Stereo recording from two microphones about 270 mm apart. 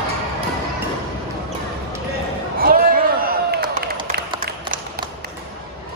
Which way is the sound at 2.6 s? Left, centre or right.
Right.